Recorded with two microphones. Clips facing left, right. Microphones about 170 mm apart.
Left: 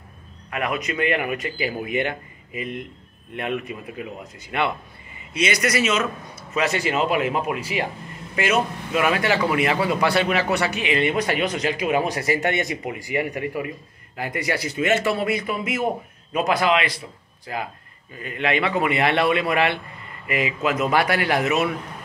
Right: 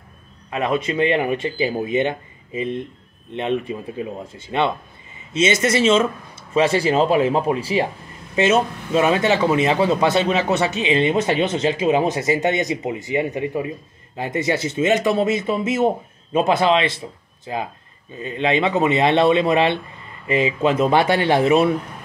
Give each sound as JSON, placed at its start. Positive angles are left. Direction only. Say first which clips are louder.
{"t": 0.5, "sound": "a man's voice", "louder": "right 5 dB", "side_deg": -25}